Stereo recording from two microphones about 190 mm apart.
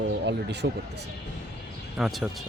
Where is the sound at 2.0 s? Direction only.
5° right (ahead or behind).